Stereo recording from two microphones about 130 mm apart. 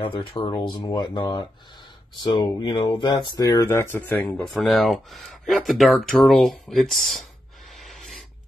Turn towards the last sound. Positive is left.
turn(degrees=0)  # may be behind; listen again after turning